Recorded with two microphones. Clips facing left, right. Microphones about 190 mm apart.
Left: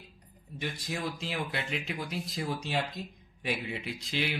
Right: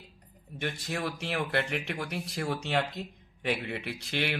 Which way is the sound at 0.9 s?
65° right (ahead or behind).